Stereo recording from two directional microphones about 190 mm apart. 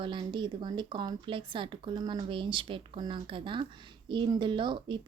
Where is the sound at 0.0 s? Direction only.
25° right (ahead or behind).